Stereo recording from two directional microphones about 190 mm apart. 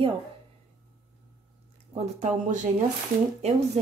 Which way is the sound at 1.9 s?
40° right (ahead or behind).